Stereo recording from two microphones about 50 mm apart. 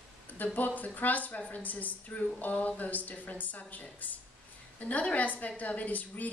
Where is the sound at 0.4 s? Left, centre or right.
Left.